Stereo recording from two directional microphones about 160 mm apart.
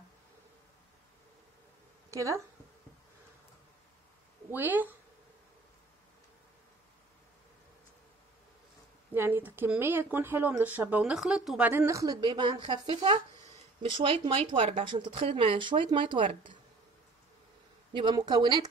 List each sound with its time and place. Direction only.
2.0 s speech: 20° right (ahead or behind)
4.5 s speech: 10° right (ahead or behind)
9.1 s speech: 15° right (ahead or behind); by 16.5 s 30° right (ahead or behind)
17.9 s speech: 25° right (ahead or behind)